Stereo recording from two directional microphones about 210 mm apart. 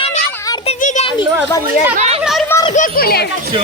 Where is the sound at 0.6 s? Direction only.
35° left (ahead or behind).